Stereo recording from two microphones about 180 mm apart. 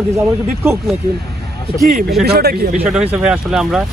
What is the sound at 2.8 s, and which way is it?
Speech, 5° right (ahead or behind).